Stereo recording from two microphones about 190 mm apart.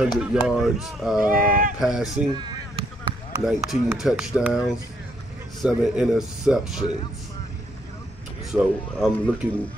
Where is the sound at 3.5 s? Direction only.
10° right (ahead or behind).